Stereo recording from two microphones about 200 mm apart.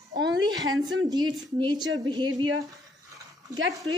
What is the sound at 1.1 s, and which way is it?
A woman's voice, 20° right (ahead or behind).